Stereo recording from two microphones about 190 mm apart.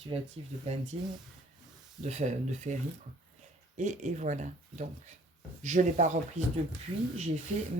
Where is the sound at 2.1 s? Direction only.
40° right (ahead or behind).